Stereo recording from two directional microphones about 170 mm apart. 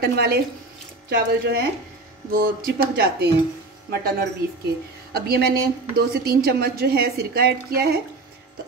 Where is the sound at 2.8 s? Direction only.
70° right (ahead or behind).